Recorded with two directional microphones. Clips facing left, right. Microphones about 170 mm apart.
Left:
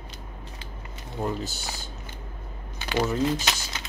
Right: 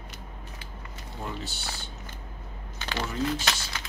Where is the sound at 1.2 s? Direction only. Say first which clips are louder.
Left 7 dB; 40° left (ahead or behind).